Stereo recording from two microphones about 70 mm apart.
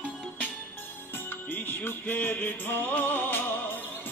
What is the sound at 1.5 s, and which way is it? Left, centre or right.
Music, left.